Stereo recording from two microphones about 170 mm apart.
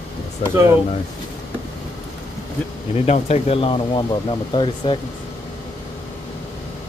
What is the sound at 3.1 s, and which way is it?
Speech, 40° left (ahead or behind).